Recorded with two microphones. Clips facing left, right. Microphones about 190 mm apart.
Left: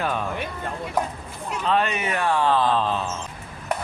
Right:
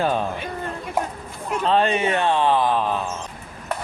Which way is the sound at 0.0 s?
30° right (ahead or behind).